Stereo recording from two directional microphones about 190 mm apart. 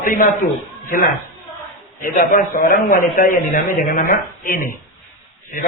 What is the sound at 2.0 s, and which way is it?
A man's voice, 45° left (ahead or behind).